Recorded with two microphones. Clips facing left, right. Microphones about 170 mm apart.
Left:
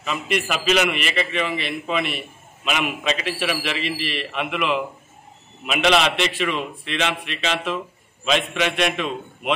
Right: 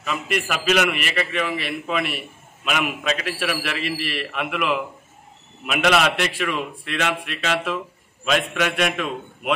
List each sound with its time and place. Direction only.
0.0 s a man's voice: 5° right (ahead or behind)